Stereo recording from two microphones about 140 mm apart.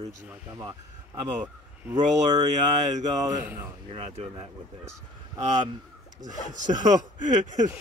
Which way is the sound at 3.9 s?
45° right (ahead or behind).